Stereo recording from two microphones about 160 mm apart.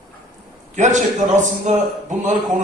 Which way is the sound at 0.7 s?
50° right (ahead or behind).